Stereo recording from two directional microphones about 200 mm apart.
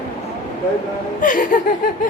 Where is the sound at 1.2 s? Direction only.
40° left (ahead or behind).